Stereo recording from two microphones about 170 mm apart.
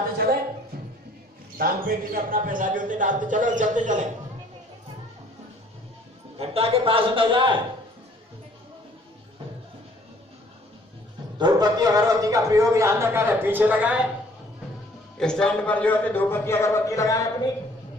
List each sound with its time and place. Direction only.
1.6 s speech: 60° right (ahead or behind)
6.3 s a man's voice: 35° right (ahead or behind)
11.3 s a man's voice: 25° right (ahead or behind); by 14.0 s 10° right (ahead or behind)
15.1 s a man's voice: 5° left (ahead or behind); by 17.5 s 20° left (ahead or behind)